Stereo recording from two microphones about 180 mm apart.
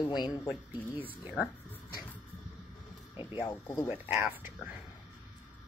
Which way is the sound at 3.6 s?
15° left (ahead or behind).